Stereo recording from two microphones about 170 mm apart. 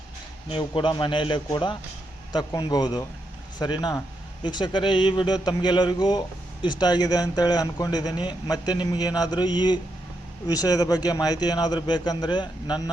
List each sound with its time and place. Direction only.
0.4 s speech: 30° left (ahead or behind)